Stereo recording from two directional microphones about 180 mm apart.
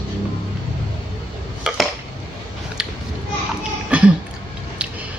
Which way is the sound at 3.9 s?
5° right (ahead or behind).